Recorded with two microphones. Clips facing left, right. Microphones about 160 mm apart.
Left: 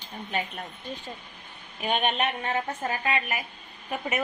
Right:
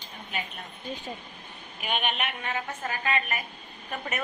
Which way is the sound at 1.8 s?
30° left (ahead or behind).